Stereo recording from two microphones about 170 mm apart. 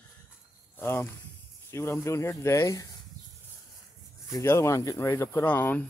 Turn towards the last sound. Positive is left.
turn(degrees=10)  # may be behind; listen again after turning